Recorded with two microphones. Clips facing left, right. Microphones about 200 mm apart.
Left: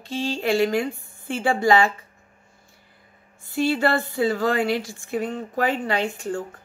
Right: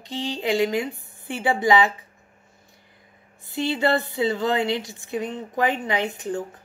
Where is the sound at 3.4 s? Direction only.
20° right (ahead or behind).